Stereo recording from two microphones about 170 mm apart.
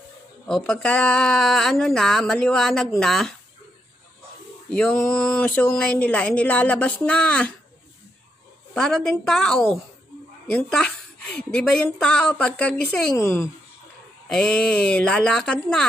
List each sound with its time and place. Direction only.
0.5 s speech: 5° left (ahead or behind)
4.6 s speech: 5° left (ahead or behind)
8.7 s speech: 5° left (ahead or behind)
14.3 s speech: 5° left (ahead or behind)